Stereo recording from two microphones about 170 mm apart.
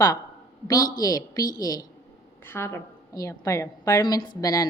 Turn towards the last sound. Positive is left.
turn(degrees=20)  # may be behind; listen again after turning